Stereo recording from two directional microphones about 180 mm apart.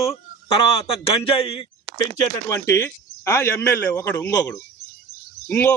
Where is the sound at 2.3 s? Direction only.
15° left (ahead or behind).